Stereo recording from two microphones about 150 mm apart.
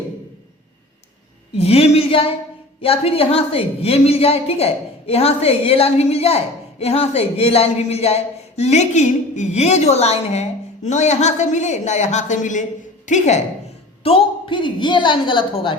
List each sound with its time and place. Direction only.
1.5 s a woman's voice: 40° left (ahead or behind)
14.0 s a woman's voice: 35° left (ahead or behind)